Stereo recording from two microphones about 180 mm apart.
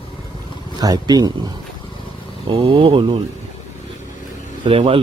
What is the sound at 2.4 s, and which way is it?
Speech, 30° right (ahead or behind).